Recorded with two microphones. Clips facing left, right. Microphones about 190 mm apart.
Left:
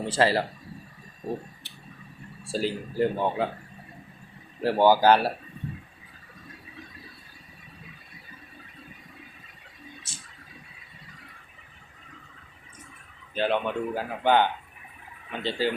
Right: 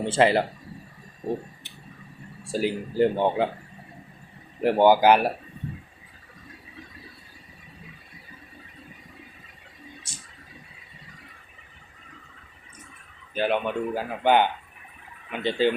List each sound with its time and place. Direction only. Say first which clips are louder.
0.0 s speech: right 3 dB; 20° right (ahead or behind)
2.5 s speech: right 2 dB; 15° right (ahead or behind)
2.9 s speech: right 4 dB; 30° right (ahead or behind)
4.6 s speech: right 2 dB; 20° right (ahead or behind)
13.3 s speech: right 1 dB; 10° right (ahead or behind)